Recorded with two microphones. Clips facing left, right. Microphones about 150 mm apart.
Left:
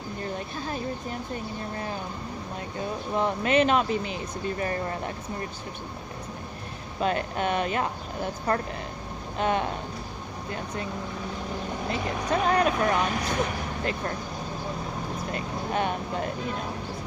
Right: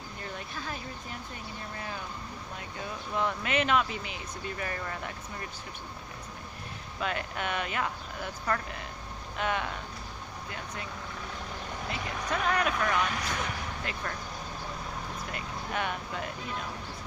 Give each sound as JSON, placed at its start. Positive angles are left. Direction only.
{"t": 3.1, "sound": "speech", "side_deg": 30}
{"t": 7.0, "sound": "speech", "side_deg": 35}
{"t": 11.9, "sound": "speech", "side_deg": 30}
{"t": 15.3, "sound": "vehicle", "side_deg": 30}